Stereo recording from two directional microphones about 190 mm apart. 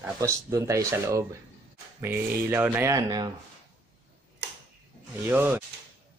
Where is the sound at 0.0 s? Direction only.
15° right (ahead or behind).